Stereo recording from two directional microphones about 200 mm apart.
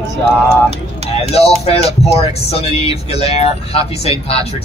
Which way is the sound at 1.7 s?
30° left (ahead or behind).